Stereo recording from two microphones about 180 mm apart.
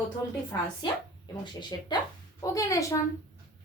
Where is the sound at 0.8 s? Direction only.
25° left (ahead or behind).